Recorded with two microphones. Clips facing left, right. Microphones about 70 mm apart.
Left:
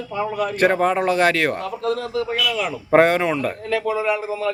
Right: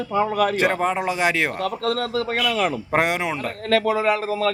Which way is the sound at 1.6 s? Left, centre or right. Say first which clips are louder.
Right 1 dB; right.